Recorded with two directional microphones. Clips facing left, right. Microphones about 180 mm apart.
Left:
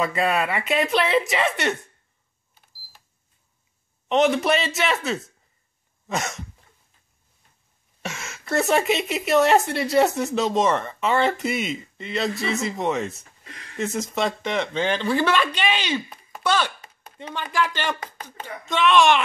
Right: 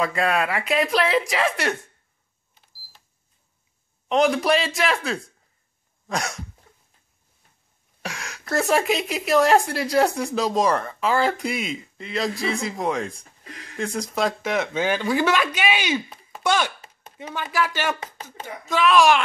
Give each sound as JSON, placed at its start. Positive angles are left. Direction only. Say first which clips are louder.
{"t": 0.0, "sound": "a woman's voice", "louder": "even", "side_deg": 0}
{"t": 4.1, "sound": "a woman's voice", "louder": "even", "side_deg": 0}
{"t": 8.0, "sound": "a woman's voice", "louder": "even", "side_deg": 0}